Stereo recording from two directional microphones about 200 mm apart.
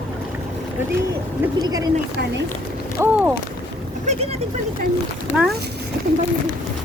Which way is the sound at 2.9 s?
10° right (ahead or behind).